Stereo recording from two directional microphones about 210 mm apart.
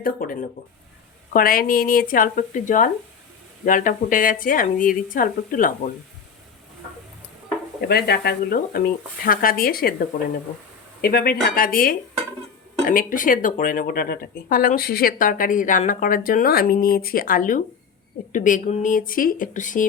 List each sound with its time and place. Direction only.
0.0 s speech: 45° left (ahead or behind)
7.8 s speech: 50° left (ahead or behind)